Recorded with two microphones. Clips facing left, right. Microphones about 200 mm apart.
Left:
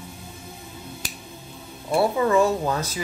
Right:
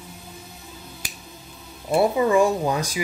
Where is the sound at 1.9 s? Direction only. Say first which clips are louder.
Right 1 dB; 15° right (ahead or behind).